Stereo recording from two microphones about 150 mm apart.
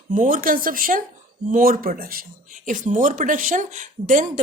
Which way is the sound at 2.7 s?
60° right (ahead or behind).